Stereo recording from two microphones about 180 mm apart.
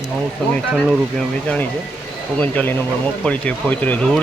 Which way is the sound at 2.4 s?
10° left (ahead or behind).